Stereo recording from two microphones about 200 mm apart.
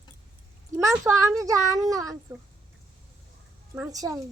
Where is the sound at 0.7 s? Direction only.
15° right (ahead or behind).